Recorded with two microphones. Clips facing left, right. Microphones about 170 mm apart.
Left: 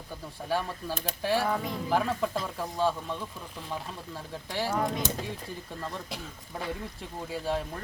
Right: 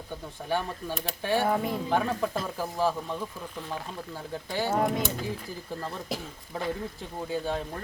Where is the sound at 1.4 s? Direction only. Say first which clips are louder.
Right 3 dB; 30° right (ahead or behind).